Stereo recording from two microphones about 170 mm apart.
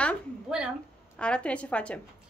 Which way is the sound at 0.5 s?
5° right (ahead or behind).